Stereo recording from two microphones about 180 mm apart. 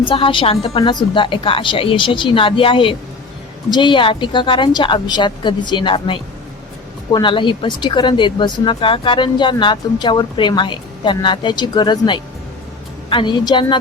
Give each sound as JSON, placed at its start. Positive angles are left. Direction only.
{"t": 0.0, "sound": "speech", "side_deg": 30}